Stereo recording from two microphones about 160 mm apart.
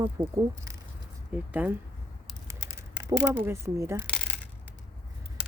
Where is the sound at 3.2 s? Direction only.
15° right (ahead or behind).